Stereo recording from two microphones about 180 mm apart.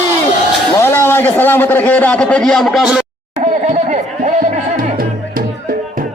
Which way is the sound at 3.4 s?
45° right (ahead or behind).